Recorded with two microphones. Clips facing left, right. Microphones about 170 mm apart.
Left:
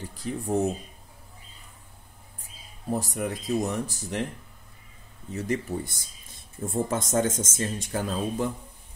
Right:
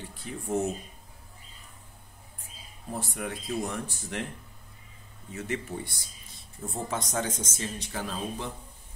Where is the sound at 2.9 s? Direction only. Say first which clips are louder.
Left 5 dB; 40° left (ahead or behind).